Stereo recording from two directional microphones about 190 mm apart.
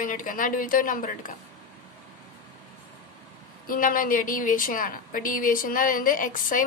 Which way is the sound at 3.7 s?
45° left (ahead or behind).